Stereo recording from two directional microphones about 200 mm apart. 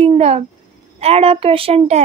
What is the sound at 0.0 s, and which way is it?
A woman's voice, 30° right (ahead or behind).